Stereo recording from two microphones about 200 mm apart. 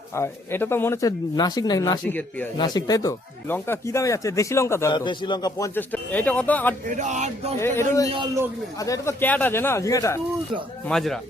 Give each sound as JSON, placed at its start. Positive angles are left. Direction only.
{"t": 0.1, "sound": "speech", "side_deg": 10}
{"t": 2.6, "sound": "speech", "side_deg": 20}
{"t": 6.8, "sound": "music", "side_deg": -40}
{"t": 7.6, "sound": "speech", "side_deg": 15}
{"t": 10.8, "sound": "a man's voice", "side_deg": 0}